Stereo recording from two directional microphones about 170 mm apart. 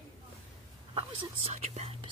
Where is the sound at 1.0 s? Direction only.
40° right (ahead or behind).